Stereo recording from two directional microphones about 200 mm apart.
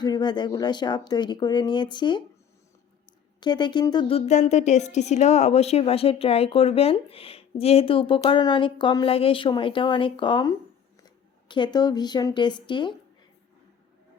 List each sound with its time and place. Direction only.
0.0 s a woman's voice: 20° left (ahead or behind)
3.4 s a woman's voice: 20° left (ahead or behind)
4.3 s a woman's voice: 35° left (ahead or behind)